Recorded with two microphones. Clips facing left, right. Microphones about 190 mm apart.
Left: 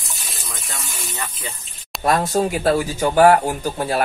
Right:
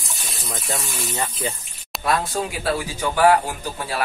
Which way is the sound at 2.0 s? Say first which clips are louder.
Left 5 dB; 45° left (ahead or behind).